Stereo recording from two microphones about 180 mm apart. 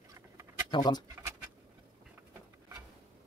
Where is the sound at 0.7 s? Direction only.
25° left (ahead or behind).